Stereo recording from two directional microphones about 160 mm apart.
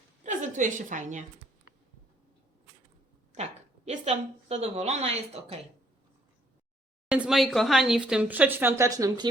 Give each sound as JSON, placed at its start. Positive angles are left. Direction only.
{"t": 0.2, "sound": "a woman's voice", "side_deg": -50}
{"t": 3.3, "sound": "a woman's voice", "side_deg": -50}
{"t": 7.1, "sound": "speech", "side_deg": -5}